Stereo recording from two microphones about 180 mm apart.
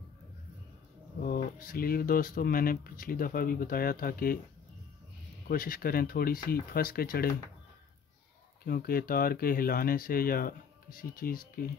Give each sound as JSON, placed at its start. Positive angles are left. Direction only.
{"t": 1.2, "sound": "speech", "side_deg": 55}
{"t": 5.5, "sound": "speech", "side_deg": 55}
{"t": 8.6, "sound": "speech", "side_deg": 55}